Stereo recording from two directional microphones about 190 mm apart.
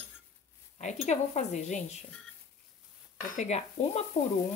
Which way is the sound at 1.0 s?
35° left (ahead or behind).